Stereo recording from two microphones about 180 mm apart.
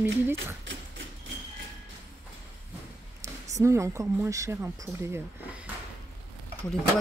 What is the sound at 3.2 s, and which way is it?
Speech, 15° right (ahead or behind).